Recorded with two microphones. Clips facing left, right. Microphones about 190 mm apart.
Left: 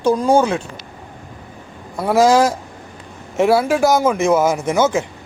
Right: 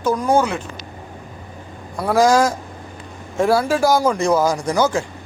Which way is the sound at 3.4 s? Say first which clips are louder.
Left 2 dB; 5° left (ahead or behind).